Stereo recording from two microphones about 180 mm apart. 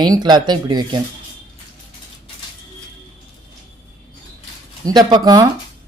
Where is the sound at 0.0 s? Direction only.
25° right (ahead or behind).